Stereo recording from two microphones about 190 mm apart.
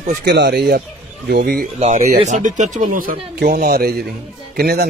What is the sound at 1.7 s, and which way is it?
Speech, 35° right (ahead or behind).